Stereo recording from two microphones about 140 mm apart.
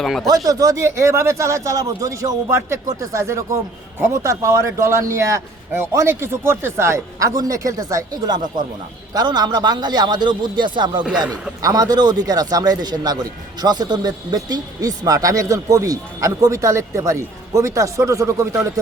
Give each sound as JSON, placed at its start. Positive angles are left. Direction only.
{"t": 0.0, "sound": "speech", "side_deg": 0}
{"t": 0.3, "sound": "a man's voice", "side_deg": -25}